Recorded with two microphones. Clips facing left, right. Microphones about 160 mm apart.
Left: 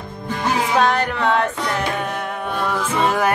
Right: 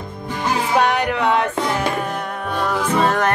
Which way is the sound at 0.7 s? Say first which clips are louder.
Right 2 dB; 10° right (ahead or behind).